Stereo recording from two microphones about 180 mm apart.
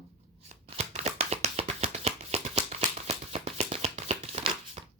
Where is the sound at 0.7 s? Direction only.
35° right (ahead or behind).